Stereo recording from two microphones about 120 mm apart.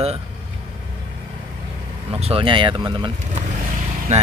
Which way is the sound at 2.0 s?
55° right (ahead or behind).